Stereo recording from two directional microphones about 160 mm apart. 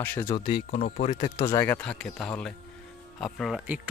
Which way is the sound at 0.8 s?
60° left (ahead or behind).